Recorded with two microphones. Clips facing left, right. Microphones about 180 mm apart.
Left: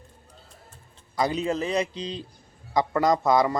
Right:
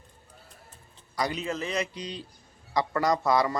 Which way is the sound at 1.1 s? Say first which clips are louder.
Left 5 dB; 30° left (ahead or behind).